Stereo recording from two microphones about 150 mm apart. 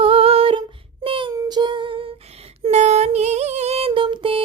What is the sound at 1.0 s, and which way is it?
Child singing, 35° right (ahead or behind).